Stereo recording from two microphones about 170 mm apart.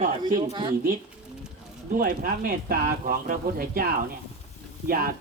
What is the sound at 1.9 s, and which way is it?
A man's voice, 60° right (ahead or behind).